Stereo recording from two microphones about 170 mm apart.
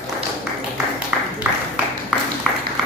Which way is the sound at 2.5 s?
Centre (ahead or behind).